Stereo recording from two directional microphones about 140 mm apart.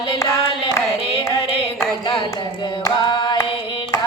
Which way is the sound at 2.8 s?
25° left (ahead or behind).